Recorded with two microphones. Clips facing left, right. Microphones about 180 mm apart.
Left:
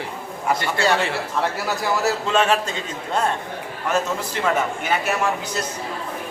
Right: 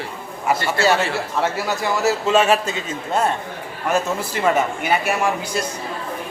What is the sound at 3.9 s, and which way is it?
A man's voice, 10° right (ahead or behind).